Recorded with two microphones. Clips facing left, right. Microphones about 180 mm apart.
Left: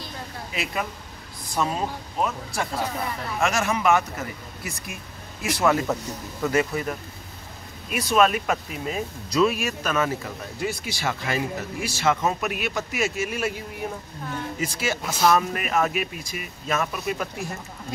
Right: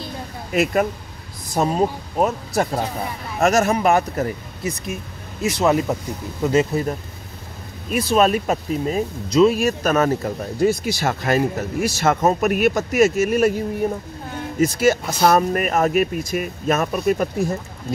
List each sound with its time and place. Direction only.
0.5 s speech: 50° right (ahead or behind)
4.6 s speech: 20° right (ahead or behind)
9.3 s speech: 25° right (ahead or behind)
9.6 s speech: 40° right (ahead or behind)
14.6 s speech: 45° right (ahead or behind)